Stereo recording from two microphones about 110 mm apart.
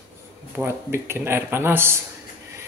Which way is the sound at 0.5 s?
20° right (ahead or behind).